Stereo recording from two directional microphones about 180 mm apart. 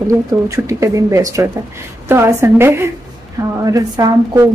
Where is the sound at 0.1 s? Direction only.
15° right (ahead or behind).